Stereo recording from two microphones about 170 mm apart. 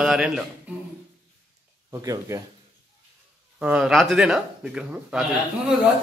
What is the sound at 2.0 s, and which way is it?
Speech, 20° right (ahead or behind).